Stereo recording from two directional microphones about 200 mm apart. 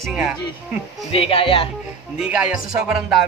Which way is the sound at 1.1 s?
30° left (ahead or behind).